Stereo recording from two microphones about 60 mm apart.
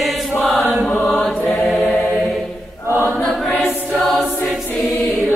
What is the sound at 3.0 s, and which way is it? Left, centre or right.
Choir, centre.